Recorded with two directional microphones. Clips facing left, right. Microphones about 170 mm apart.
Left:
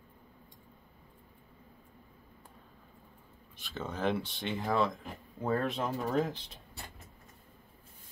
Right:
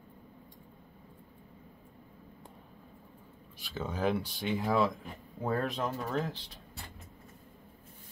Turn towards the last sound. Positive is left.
turn(degrees=15)  # may be behind; listen again after turning